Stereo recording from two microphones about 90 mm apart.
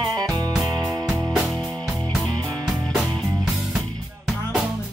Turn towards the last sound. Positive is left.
turn(degrees=0)  # may be behind; listen again after turning